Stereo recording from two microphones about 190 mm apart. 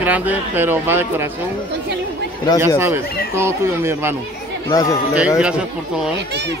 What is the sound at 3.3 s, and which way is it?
Speech, 15° right (ahead or behind).